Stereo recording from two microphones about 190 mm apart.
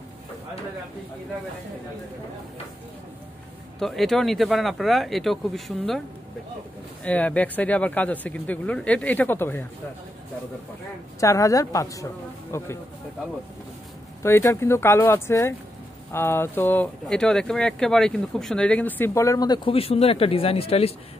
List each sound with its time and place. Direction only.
3.8 s speech: centre (ahead or behind)
7.1 s speech: 10° left (ahead or behind)
11.1 s speech: 15° left (ahead or behind)
14.2 s speech: 15° left (ahead or behind); by 20.9 s 30° left (ahead or behind)